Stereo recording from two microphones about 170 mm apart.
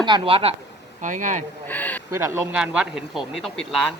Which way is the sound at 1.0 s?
50° right (ahead or behind).